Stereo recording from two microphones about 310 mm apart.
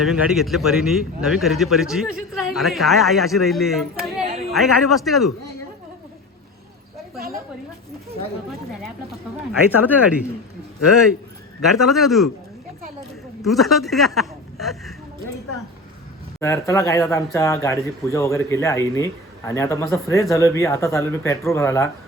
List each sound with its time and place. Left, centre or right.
0.0 s a man's voice: centre
7.2 s a sound: right
9.5 s a man's voice: centre
11.6 s a man's voice: centre
13.4 s a man's voice: centre
16.4 s speech: centre